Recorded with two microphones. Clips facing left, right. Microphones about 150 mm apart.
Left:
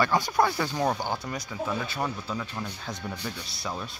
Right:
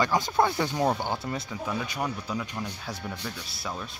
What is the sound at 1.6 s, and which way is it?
Speech, 15° right (ahead or behind).